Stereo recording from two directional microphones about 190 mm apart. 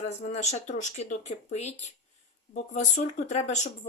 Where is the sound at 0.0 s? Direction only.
35° left (ahead or behind).